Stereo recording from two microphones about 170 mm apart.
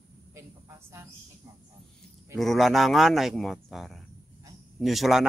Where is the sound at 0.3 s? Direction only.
15° right (ahead or behind).